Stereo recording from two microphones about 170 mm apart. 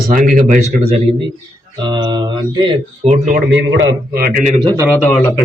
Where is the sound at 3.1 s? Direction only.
60° right (ahead or behind).